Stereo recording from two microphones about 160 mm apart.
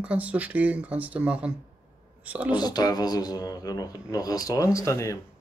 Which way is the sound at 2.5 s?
25° left (ahead or behind).